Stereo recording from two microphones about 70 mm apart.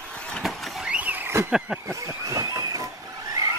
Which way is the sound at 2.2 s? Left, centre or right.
Right.